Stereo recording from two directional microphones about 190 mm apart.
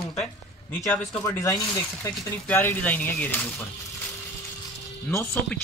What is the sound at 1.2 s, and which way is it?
Speech, 15° left (ahead or behind).